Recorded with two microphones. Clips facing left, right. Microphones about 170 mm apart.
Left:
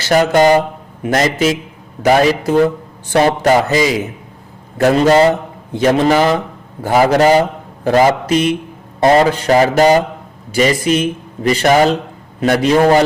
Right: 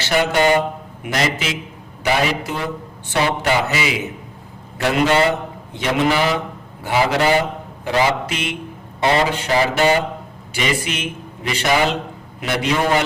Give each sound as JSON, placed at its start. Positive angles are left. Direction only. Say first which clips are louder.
{"t": 0.0, "sound": "a man's voice", "louder": "left 6 dB", "side_deg": 40}